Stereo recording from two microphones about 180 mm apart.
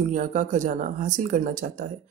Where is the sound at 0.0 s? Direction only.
45° right (ahead or behind).